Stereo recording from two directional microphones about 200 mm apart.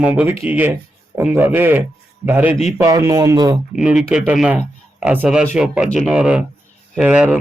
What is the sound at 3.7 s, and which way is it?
Speech, 5° right (ahead or behind).